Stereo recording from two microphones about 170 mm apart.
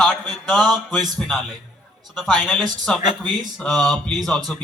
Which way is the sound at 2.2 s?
Centre (ahead or behind).